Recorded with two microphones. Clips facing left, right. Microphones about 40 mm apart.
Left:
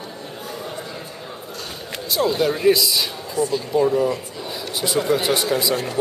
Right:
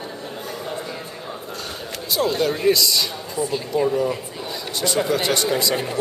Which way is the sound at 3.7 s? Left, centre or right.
Centre.